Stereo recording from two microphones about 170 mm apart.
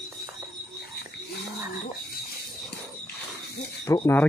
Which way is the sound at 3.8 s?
15° left (ahead or behind).